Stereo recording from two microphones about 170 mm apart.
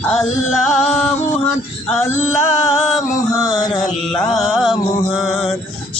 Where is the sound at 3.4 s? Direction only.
20° left (ahead or behind).